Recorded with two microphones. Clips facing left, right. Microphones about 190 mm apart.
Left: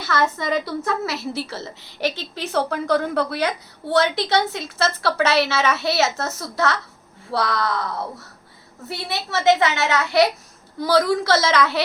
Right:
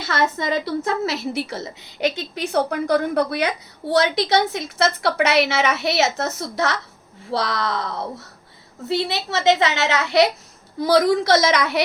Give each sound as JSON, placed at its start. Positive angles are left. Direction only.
{"t": 0.0, "sound": "a woman's voice", "side_deg": -20}